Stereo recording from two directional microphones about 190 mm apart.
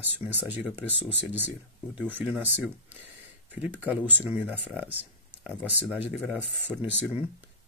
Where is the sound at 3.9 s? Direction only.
10° right (ahead or behind).